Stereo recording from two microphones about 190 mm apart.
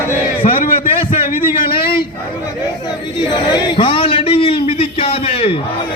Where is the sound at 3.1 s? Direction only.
25° left (ahead or behind).